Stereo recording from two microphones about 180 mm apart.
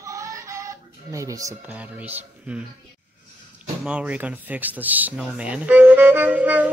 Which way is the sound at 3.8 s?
5° right (ahead or behind).